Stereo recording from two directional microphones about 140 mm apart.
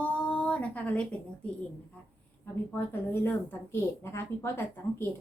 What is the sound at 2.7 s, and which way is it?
Speech, 15° left (ahead or behind).